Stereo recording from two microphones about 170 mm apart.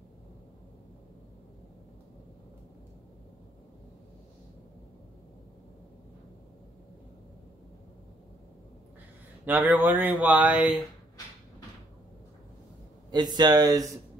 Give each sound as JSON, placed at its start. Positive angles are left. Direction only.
{"t": 9.4, "sound": "speech", "side_deg": -10}
{"t": 13.1, "sound": "speech", "side_deg": -25}